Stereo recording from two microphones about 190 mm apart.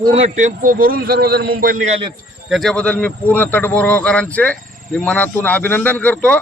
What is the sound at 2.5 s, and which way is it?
A man's voice, centre (ahead or behind).